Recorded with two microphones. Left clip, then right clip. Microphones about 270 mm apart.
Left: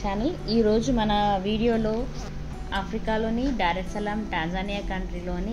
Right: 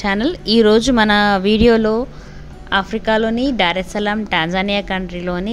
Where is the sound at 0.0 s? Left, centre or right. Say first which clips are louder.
Right 10 dB; right.